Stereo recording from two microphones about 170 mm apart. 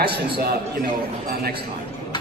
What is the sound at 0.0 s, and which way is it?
Speech, 65° right (ahead or behind).